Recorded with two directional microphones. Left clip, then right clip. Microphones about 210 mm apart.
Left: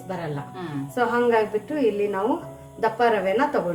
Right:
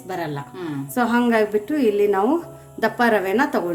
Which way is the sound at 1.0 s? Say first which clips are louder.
Right 1 dB; 55° right (ahead or behind).